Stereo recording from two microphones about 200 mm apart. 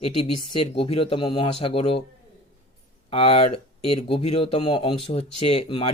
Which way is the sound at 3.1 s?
30° left (ahead or behind).